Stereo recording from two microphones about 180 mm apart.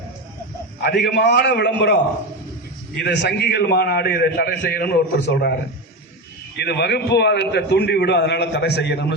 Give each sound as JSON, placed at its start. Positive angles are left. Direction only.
{"t": 0.8, "sound": "a man's voice", "side_deg": 70}
{"t": 3.0, "sound": "a man's voice", "side_deg": 70}
{"t": 6.6, "sound": "a man's voice", "side_deg": 65}